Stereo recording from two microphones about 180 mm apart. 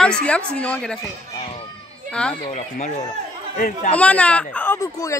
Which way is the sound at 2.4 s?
40° left (ahead or behind).